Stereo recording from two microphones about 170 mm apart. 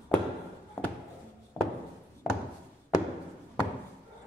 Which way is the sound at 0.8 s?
10° left (ahead or behind).